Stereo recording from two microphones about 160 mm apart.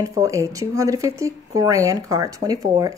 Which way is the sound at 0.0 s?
20° right (ahead or behind).